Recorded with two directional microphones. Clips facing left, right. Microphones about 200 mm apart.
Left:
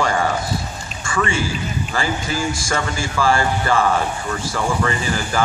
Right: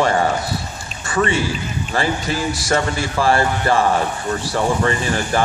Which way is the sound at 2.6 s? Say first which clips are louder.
Right 4 dB; 35° right (ahead or behind).